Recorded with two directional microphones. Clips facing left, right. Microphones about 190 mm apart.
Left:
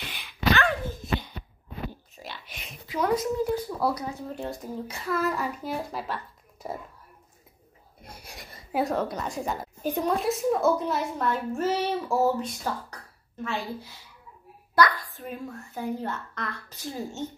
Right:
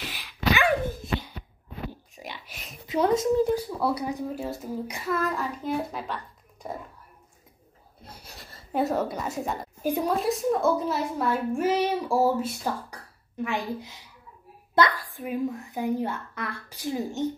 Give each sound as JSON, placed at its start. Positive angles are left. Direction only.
{"t": 0.0, "sound": "dog", "side_deg": -5}
{"t": 2.1, "sound": "whispering", "side_deg": -15}
{"t": 2.9, "sound": "speech", "side_deg": -25}
{"t": 3.5, "sound": "a woman's voice", "side_deg": -10}
{"t": 8.0, "sound": "a sound", "side_deg": 10}
{"t": 8.7, "sound": "a woman's voice", "side_deg": -5}